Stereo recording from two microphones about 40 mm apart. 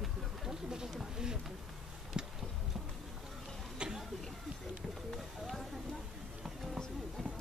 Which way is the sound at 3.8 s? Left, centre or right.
Right.